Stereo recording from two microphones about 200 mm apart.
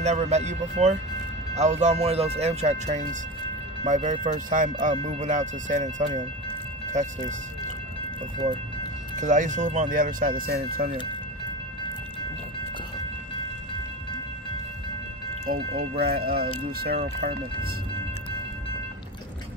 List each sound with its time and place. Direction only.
0.0 s speech: 35° right (ahead or behind)
9.1 s speech: 40° right (ahead or behind)
15.4 s speech: 45° right (ahead or behind)